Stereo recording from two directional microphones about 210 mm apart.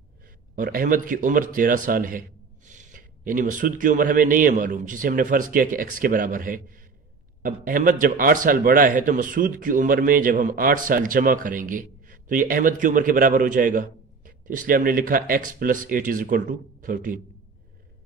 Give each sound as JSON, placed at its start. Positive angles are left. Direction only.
{"t": 0.6, "sound": "a man's voice", "side_deg": -40}